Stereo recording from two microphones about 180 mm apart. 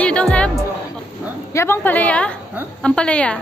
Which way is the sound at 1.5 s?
15° left (ahead or behind).